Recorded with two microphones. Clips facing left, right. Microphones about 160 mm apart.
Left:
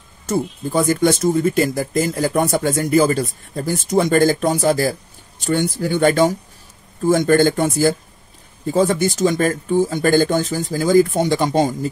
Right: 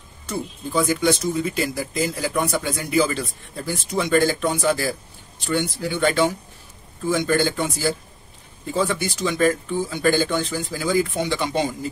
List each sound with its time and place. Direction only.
0.3 s speech: 50° left (ahead or behind)